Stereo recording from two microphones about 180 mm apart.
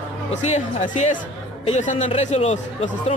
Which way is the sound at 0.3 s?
40° left (ahead or behind).